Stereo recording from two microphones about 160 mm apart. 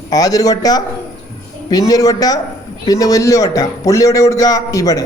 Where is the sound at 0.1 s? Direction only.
25° left (ahead or behind).